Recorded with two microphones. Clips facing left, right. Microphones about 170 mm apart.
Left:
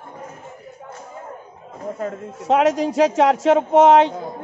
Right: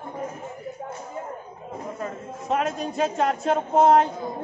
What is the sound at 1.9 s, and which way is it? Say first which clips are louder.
A man's voice: left 4 dB; 80° left.